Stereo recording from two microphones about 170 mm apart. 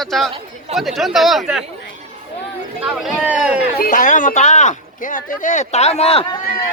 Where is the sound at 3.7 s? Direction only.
55° left (ahead or behind); by 6.2 s 35° left (ahead or behind).